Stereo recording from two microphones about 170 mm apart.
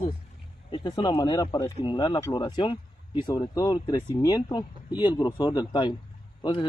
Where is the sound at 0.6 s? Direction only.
30° left (ahead or behind).